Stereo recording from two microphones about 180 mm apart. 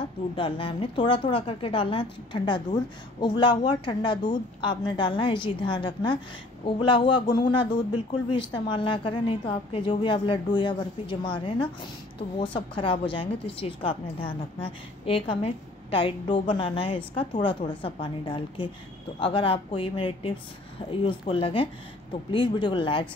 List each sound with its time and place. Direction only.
0.4 s a woman's voice: 30° left (ahead or behind)